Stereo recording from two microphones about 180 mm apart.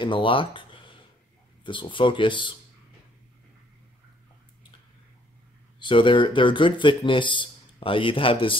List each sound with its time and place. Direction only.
0.0 s a sound: 30° left (ahead or behind)
1.6 s speech: 25° left (ahead or behind)
5.8 s speech: 25° left (ahead or behind)